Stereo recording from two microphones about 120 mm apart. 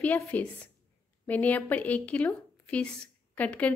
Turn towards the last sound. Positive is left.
turn(degrees=10)  # may be behind; listen again after turning